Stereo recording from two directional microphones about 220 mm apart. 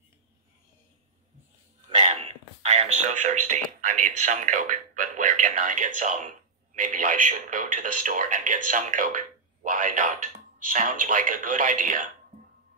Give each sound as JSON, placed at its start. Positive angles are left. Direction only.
{"t": 1.9, "sound": "speech", "side_deg": -30}